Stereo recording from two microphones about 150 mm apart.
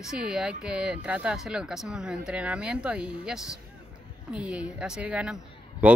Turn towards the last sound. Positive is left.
turn(degrees=-10)  # may be behind; listen again after turning